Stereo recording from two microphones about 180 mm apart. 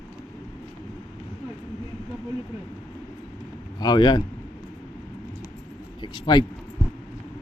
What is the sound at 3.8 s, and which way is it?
Speech, 25° left (ahead or behind).